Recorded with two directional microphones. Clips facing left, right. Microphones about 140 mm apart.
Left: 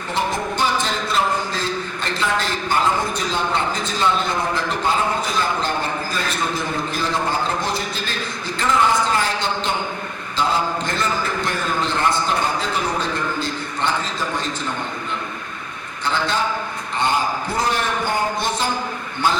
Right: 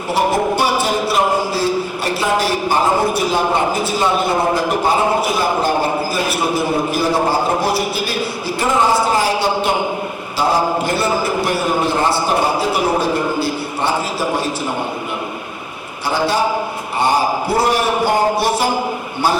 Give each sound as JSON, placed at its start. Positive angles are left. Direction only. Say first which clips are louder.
{"t": 0.1, "sound": "a man's voice", "louder": "right 6 dB", "side_deg": -10}
{"t": 0.5, "sound": "a sound", "louder": "right 5 dB", "side_deg": -10}
{"t": 3.1, "sound": "a man's voice", "louder": "right 6 dB", "side_deg": -10}
{"t": 7.2, "sound": "speech", "louder": "right 5 dB", "side_deg": -35}
{"t": 7.6, "sound": "a man's voice", "louder": "right 7 dB", "side_deg": -10}
{"t": 8.8, "sound": "speech", "louder": "right 3 dB", "side_deg": -30}
{"t": 9.0, "sound": "a sound", "louder": "right 5 dB", "side_deg": -10}
{"t": 10.8, "sound": "a man's voice", "louder": "right 6 dB", "side_deg": -10}
{"t": 16.0, "sound": "a man's voice", "louder": "right 5 dB", "side_deg": -10}